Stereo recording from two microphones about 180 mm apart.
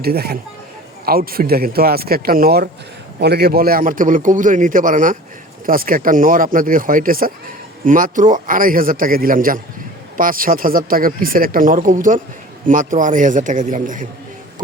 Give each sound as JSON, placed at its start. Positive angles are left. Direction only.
{"t": 0.0, "sound": "speech", "side_deg": -60}